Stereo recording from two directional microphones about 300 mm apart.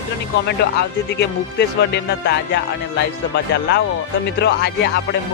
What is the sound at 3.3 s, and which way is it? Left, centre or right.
Speech, left.